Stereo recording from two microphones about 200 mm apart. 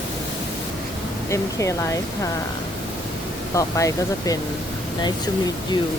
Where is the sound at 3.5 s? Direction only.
15° left (ahead or behind).